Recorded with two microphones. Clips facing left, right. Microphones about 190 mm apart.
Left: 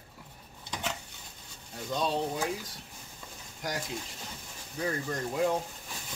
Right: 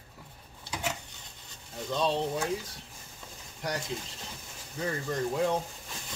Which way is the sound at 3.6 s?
Centre (ahead or behind).